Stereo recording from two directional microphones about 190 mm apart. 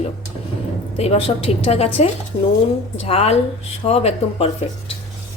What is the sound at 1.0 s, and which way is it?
Speech, 35° left (ahead or behind).